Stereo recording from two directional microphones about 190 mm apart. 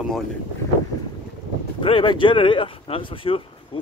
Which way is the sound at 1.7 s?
25° left (ahead or behind).